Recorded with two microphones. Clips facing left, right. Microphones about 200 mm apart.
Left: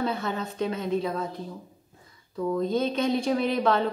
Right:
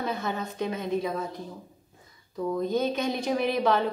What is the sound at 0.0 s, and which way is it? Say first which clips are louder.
A woman's voice: left 2 dB; 10° right (ahead or behind).